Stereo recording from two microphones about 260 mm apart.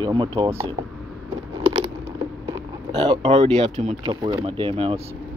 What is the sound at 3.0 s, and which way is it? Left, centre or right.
Speech, centre.